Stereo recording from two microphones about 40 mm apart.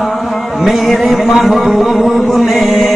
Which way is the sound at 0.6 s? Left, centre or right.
Centre.